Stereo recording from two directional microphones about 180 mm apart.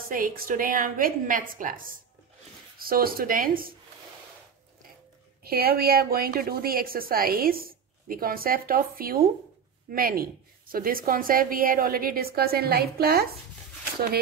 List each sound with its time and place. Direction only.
0.1 s a woman's voice: 50° right (ahead or behind)
5.4 s a woman's voice: 60° right (ahead or behind)